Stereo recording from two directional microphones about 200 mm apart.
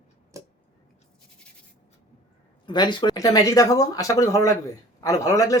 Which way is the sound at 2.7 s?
20° left (ahead or behind).